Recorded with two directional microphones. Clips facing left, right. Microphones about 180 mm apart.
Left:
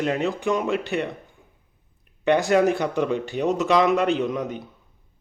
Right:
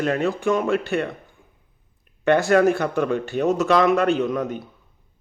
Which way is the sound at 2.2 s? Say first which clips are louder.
Right 2 dB; 15° left (ahead or behind).